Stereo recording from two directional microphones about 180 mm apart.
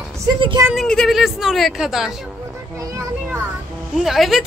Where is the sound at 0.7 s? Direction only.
Centre (ahead or behind).